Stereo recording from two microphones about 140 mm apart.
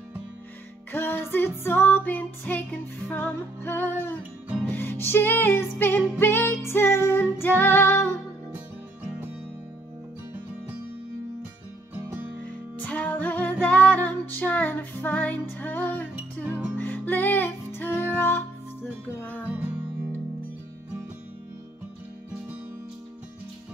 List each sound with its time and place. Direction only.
0.9 s music: 15° left (ahead or behind)
12.7 s music: 10° left (ahead or behind)
16.4 s music: 10° right (ahead or behind)
16.7 s music: 15° left (ahead or behind)
19.6 s music: 15° right (ahead or behind)